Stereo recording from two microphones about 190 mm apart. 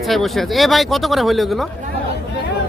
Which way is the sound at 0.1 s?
Centre (ahead or behind).